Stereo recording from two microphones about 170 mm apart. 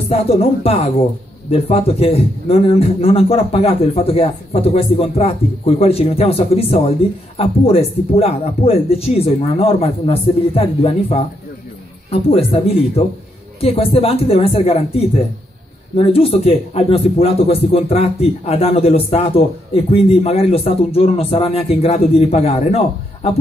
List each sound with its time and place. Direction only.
0.1 s speech: 35° left (ahead or behind)